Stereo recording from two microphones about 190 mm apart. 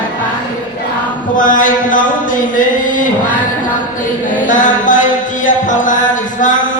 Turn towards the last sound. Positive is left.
turn(degrees=45)  # may be behind; listen again after turning